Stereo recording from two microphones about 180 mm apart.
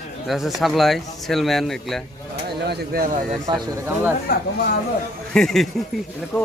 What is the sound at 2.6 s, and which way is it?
Speech, 60° right (ahead or behind).